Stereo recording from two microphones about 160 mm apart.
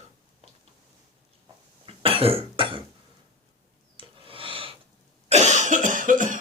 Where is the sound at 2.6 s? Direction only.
30° right (ahead or behind).